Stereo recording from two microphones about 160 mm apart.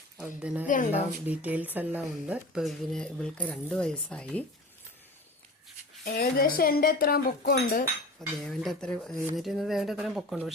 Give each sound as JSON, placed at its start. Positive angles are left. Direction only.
{"t": 0.2, "sound": "a woman's voice", "side_deg": -10}
{"t": 6.1, "sound": "speech", "side_deg": 70}
{"t": 8.4, "sound": "speech", "side_deg": 5}